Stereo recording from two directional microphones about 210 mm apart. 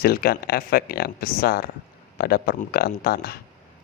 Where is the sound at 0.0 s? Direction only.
45° left (ahead or behind).